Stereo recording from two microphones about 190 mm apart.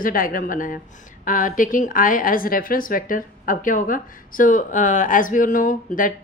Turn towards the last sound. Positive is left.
turn(degrees=45)  # may be behind; listen again after turning